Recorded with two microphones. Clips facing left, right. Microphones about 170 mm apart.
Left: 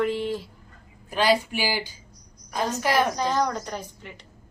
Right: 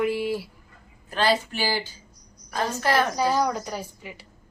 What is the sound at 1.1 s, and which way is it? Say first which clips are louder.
Speech: left 1 dB; 10° left (ahead or behind).